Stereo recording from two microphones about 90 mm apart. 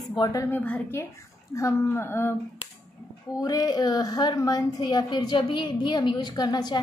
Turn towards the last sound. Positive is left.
turn(degrees=50)  # may be behind; listen again after turning